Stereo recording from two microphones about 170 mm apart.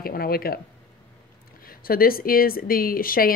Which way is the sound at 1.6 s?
60° left (ahead or behind).